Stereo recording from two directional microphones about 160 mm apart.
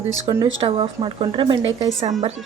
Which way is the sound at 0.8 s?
35° right (ahead or behind).